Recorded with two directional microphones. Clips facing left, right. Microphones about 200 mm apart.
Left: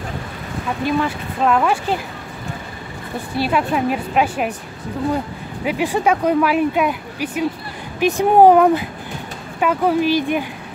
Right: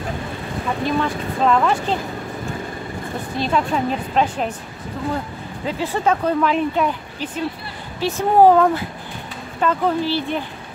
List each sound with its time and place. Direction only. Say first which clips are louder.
0.8 s speech: left 2 dB; 5° left (ahead or behind)
3.3 s speech: left 2 dB; 10° left (ahead or behind)
5.7 s speech: left 2 dB; 15° left (ahead or behind)